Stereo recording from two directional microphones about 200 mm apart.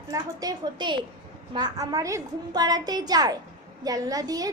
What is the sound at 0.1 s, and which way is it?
A woman's voice, 20° right (ahead or behind).